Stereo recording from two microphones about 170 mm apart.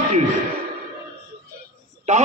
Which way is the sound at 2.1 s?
45° right (ahead or behind).